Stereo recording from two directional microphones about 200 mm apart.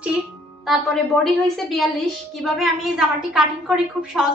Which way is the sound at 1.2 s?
Centre (ahead or behind).